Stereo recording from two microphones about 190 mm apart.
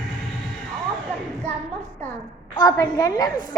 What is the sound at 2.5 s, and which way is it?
Speech, 20° left (ahead or behind).